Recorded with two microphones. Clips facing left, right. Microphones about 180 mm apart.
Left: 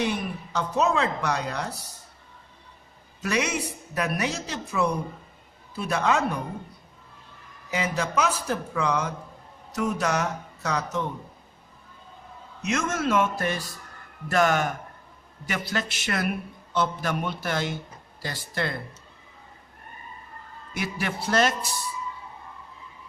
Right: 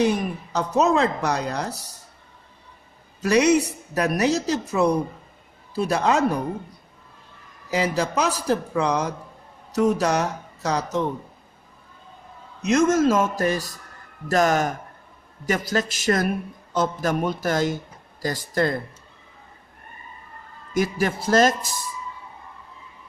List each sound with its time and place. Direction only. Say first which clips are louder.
0.0 s speech: right 6 dB; 40° right (ahead or behind)
3.2 s speech: right 9 dB; 35° right (ahead or behind)
7.7 s speech: right 5 dB; 35° right (ahead or behind)
12.6 s speech: right 9 dB; 40° right (ahead or behind)
20.7 s speech: right 8 dB; 40° right (ahead or behind)